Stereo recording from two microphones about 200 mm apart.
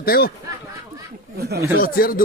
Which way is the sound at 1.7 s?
45° left (ahead or behind).